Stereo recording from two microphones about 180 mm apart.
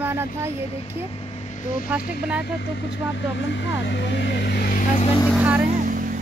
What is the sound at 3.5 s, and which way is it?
Speech, 75° left (ahead or behind).